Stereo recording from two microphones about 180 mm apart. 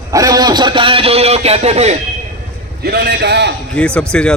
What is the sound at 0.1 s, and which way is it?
Speech, 20° right (ahead or behind).